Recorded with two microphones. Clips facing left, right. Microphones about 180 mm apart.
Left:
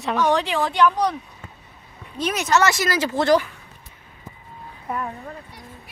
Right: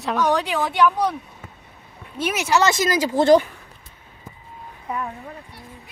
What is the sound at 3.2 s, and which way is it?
Speech, 25° right (ahead or behind).